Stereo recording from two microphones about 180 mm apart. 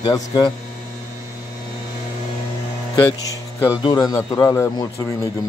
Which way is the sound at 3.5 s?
15° left (ahead or behind).